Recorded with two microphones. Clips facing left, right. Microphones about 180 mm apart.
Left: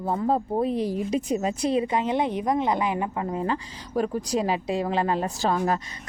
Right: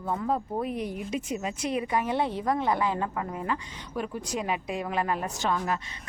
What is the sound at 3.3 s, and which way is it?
Speech, 30° left (ahead or behind).